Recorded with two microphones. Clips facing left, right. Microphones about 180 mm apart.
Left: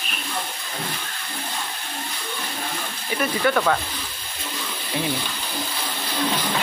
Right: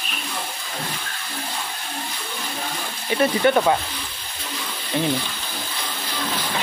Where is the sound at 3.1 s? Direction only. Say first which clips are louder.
Right 4 dB; 25° right (ahead or behind).